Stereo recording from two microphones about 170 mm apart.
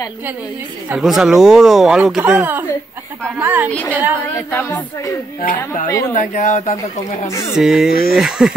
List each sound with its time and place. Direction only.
0.8 s a woman's voice: 5° right (ahead or behind)
4.4 s a sound: 15° left (ahead or behind)
5.4 s speech: 55° left (ahead or behind)
5.9 s speech: 20° left (ahead or behind)
6.1 s speech: 45° left (ahead or behind)
7.2 s a sound: 15° left (ahead or behind)
7.5 s speech: centre (ahead or behind)